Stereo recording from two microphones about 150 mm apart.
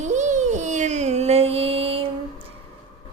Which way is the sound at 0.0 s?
50° right (ahead or behind).